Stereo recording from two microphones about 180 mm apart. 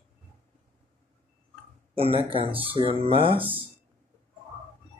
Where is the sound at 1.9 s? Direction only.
30° right (ahead or behind).